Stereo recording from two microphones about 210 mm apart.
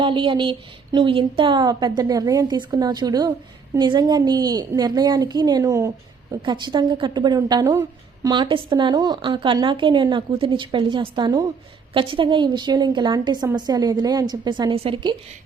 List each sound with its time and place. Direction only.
0.0 s a woman's voice: 25° right (ahead or behind)